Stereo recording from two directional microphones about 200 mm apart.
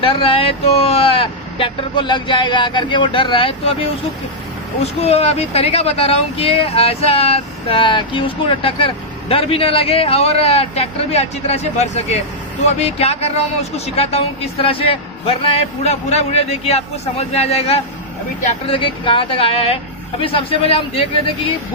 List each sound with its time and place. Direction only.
0.0 s speech: 30° left (ahead or behind)
4.7 s speech: 30° left (ahead or behind)